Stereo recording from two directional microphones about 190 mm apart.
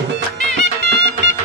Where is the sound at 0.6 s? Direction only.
65° right (ahead or behind).